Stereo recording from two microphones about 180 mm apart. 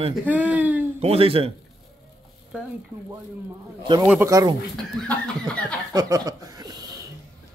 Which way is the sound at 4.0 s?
10° right (ahead or behind).